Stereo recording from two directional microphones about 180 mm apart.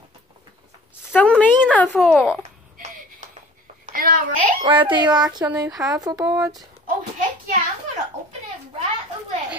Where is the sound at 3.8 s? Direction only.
50° right (ahead or behind).